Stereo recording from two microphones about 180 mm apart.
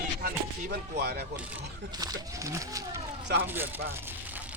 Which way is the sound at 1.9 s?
20° right (ahead or behind).